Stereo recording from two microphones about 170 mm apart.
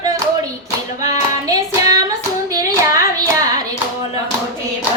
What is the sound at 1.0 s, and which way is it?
Clapping, 20° right (ahead or behind).